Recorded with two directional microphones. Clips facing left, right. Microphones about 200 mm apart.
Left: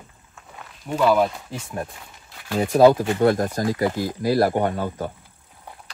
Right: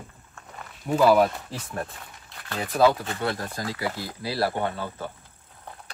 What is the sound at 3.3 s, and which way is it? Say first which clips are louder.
Speech: left 10 dB; 45° left (ahead or behind).